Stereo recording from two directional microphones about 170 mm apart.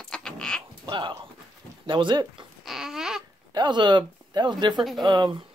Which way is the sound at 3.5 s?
25° right (ahead or behind).